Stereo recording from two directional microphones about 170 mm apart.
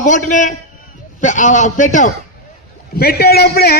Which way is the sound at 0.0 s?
50° left (ahead or behind).